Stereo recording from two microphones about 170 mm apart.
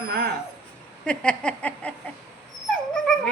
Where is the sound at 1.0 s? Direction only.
5° left (ahead or behind).